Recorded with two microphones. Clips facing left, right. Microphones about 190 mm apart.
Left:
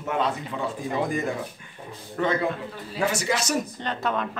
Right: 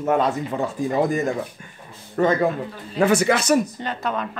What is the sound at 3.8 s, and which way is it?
Speech, 5° right (ahead or behind).